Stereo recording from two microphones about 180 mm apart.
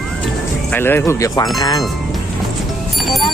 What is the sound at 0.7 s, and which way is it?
Speech, 10° left (ahead or behind).